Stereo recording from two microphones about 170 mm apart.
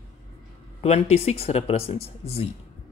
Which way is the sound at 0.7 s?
40° left (ahead or behind).